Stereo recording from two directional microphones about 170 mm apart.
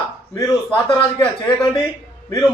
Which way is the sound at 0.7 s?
30° left (ahead or behind).